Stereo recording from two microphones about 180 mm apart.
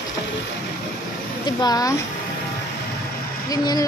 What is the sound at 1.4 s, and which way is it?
Speech, 20° left (ahead or behind).